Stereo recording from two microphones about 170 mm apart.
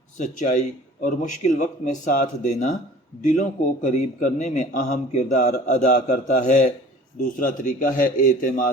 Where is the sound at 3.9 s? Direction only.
45° left (ahead or behind).